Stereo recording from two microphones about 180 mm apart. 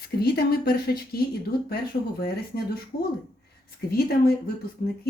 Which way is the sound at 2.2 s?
60° left (ahead or behind).